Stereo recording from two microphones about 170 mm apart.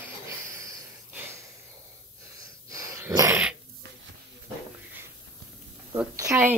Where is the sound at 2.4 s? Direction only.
20° right (ahead or behind).